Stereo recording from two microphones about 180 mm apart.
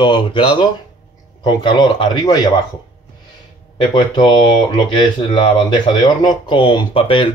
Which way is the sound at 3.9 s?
25° left (ahead or behind).